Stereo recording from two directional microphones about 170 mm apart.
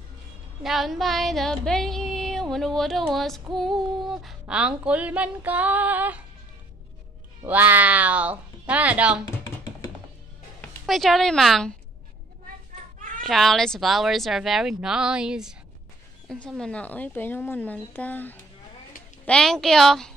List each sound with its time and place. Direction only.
0.6 s female singing: centre (ahead or behind)
7.4 s female singing: 10° right (ahead or behind)
10.9 s female singing: centre (ahead or behind)
13.2 s female singing: centre (ahead or behind)
16.3 s a woman's voice: 5° left (ahead or behind)
19.2 s female singing: 5° left (ahead or behind)